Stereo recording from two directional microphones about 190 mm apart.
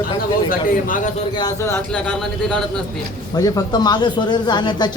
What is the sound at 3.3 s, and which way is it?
Speech, 20° left (ahead or behind).